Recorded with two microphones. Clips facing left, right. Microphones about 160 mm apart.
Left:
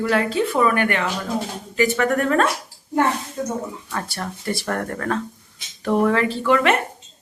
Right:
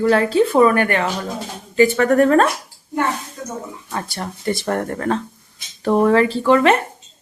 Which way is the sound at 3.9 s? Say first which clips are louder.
Right 5 dB; 20° right (ahead or behind).